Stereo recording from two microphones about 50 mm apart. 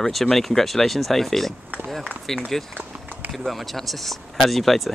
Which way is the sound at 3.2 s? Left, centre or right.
Centre.